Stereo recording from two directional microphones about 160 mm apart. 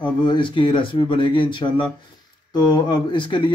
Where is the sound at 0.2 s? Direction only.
30° left (ahead or behind).